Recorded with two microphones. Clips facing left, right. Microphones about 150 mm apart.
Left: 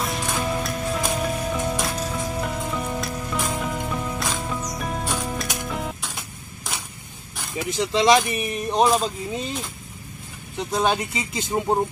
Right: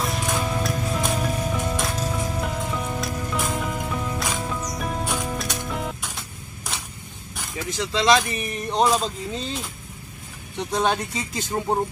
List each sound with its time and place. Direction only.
0.0 s music: centre (ahead or behind)
7.5 s speech: 20° left (ahead or behind)
10.7 s speech: 5° left (ahead or behind)